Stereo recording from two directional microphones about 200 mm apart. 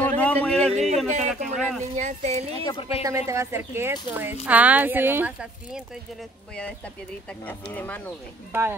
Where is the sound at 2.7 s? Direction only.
30° left (ahead or behind).